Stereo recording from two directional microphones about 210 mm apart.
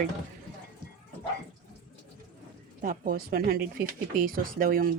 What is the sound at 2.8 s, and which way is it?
Speech, 40° right (ahead or behind).